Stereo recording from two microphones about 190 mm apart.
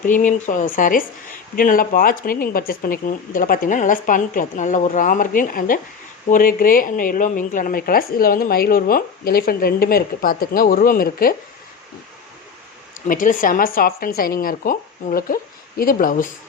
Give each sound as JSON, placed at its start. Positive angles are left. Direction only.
{"t": 0.0, "sound": "a woman's voice", "side_deg": 45}
{"t": 13.1, "sound": "a woman's voice", "side_deg": 45}